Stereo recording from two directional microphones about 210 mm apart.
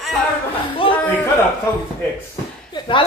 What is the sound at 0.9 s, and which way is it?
Speech, 10° left (ahead or behind).